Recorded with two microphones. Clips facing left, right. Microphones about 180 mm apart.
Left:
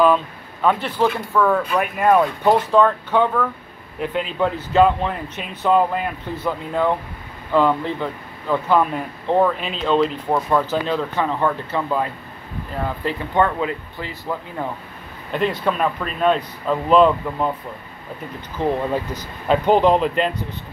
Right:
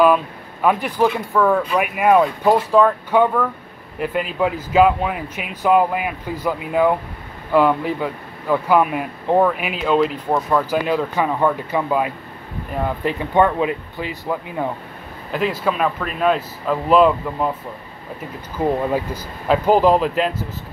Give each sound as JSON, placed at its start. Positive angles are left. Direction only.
{"t": 0.0, "sound": "speech", "side_deg": -10}
{"t": 15.3, "sound": "speech", "side_deg": -5}
{"t": 18.6, "sound": "speech", "side_deg": -10}